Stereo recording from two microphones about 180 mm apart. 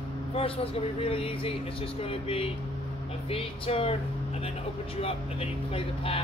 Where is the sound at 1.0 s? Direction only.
30° left (ahead or behind).